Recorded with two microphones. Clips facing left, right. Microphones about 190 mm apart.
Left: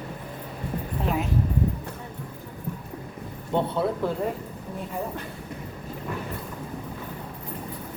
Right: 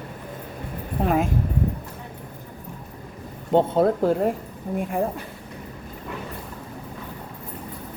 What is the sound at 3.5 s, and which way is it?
Speech, 45° right (ahead or behind).